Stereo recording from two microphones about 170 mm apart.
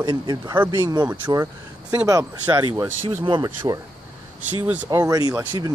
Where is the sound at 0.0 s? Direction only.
25° right (ahead or behind).